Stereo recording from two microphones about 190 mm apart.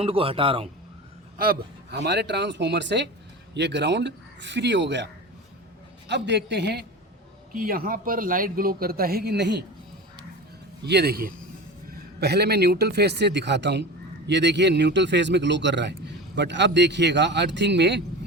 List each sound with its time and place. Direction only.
0.0 s a man's voice: 30° right (ahead or behind)
1.4 s a man's voice: 55° right (ahead or behind)
6.1 s a man's voice: 65° right (ahead or behind)
7.5 s a man's voice: 50° right (ahead or behind)
10.8 s a man's voice: 60° right (ahead or behind)